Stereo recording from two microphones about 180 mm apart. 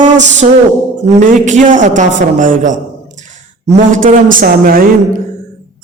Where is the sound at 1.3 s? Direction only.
45° right (ahead or behind).